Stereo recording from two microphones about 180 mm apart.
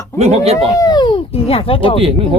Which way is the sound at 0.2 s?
35° right (ahead or behind).